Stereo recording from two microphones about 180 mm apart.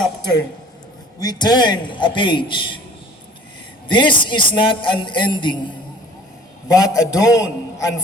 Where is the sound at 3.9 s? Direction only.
25° left (ahead or behind).